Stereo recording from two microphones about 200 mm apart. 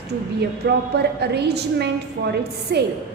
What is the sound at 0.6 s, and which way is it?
A woman's voice, 60° right (ahead or behind).